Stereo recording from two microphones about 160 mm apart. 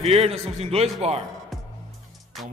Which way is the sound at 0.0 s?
40° right (ahead or behind).